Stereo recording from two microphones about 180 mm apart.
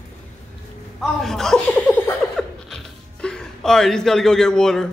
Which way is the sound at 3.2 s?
5° left (ahead or behind).